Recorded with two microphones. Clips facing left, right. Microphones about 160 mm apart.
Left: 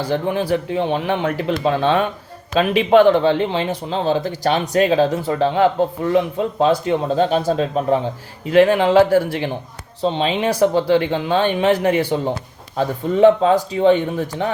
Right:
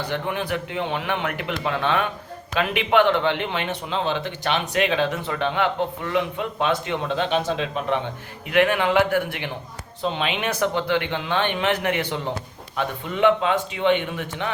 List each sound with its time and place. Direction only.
0.1 s speech: 30° left (ahead or behind)